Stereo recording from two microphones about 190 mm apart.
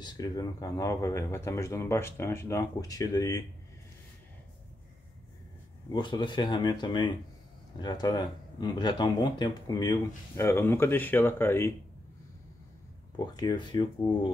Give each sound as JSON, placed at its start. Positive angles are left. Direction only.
{"t": 0.0, "sound": "speech", "side_deg": 20}
{"t": 5.9, "sound": "speech", "side_deg": 25}
{"t": 13.1, "sound": "speech", "side_deg": 25}